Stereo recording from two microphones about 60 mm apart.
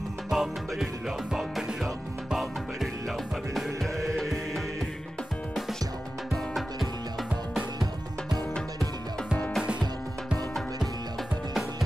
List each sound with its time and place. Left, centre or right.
0.3 s music: centre
3.5 s music: centre
6.3 s music: centre
9.6 s music: centre